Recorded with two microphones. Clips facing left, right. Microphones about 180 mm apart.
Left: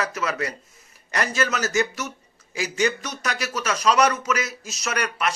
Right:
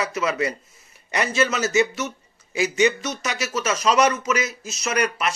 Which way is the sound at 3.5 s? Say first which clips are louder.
Right 1 dB; 5° right (ahead or behind).